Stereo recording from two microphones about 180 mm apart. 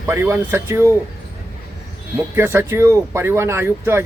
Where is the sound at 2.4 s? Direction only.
10° right (ahead or behind).